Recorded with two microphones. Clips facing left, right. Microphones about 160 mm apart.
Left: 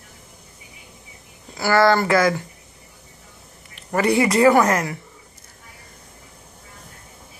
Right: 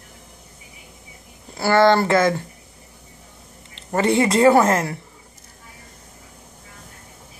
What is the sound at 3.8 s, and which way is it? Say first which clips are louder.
A woman's voice: even; 25° right (ahead or behind).